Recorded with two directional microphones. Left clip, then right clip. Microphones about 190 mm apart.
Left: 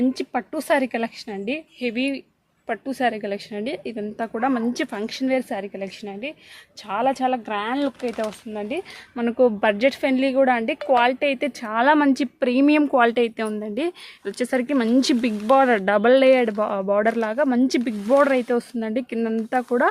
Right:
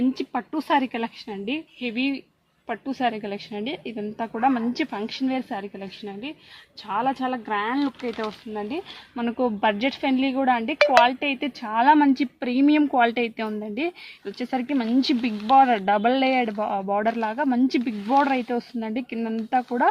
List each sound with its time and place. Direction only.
0.1 s a woman's voice: 55° left (ahead or behind)